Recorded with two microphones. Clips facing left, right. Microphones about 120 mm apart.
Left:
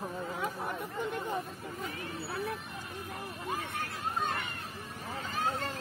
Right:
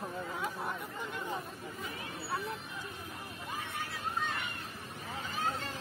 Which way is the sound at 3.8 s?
50° left (ahead or behind).